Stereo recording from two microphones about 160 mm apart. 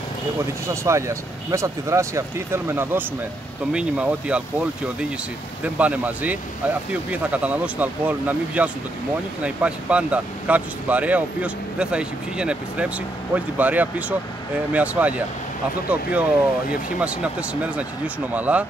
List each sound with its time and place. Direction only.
0.7 s speech: 20° right (ahead or behind)
5.8 s speech: 10° right (ahead or behind)